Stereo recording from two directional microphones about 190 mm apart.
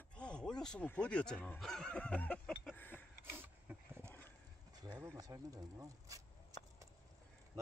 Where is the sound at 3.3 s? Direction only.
10° right (ahead or behind).